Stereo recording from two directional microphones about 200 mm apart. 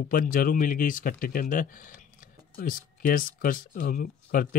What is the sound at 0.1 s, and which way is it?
Speech, 45° left (ahead or behind).